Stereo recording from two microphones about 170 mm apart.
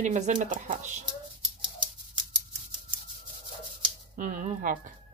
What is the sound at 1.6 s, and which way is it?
Typewriter, 30° right (ahead or behind).